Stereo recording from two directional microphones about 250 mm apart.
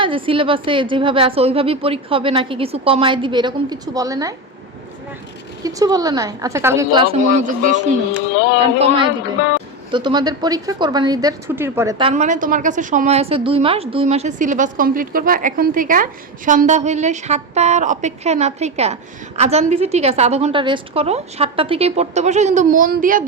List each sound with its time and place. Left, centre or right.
0.0 s a woman's voice: right
5.6 s a woman's voice: centre; by 7.8 s right
9.9 s a woman's voice: centre; by 23.2 s right